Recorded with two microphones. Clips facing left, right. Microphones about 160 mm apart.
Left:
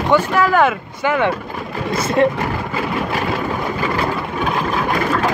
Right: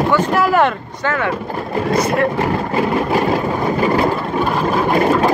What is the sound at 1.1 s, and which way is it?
Speech, 20° left (ahead or behind).